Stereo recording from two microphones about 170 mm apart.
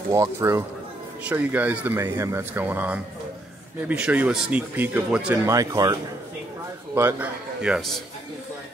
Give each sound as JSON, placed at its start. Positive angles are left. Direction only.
{"t": 0.1, "sound": "speech", "side_deg": -20}
{"t": 5.5, "sound": "speech", "side_deg": -20}
{"t": 7.0, "sound": "a man's voice", "side_deg": -10}